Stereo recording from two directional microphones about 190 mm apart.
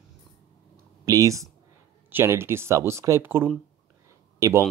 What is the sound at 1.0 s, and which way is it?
Speech, 15° right (ahead or behind).